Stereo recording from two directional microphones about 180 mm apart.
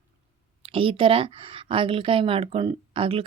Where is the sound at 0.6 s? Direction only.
30° right (ahead or behind).